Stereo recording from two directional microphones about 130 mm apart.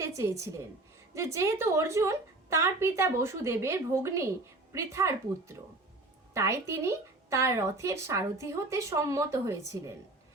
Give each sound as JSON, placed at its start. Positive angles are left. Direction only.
{"t": 0.0, "sound": "a woman's voice", "side_deg": -25}